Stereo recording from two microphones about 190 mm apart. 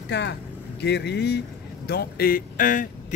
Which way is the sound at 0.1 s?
65° left (ahead or behind).